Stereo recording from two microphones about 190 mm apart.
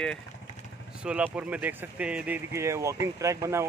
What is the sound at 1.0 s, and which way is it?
Speech, 5° right (ahead or behind).